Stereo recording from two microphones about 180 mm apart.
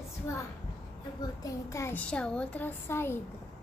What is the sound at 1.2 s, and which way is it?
Speech, 20° left (ahead or behind).